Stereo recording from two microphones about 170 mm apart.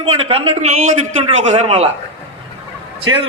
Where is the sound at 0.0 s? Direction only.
35° right (ahead or behind).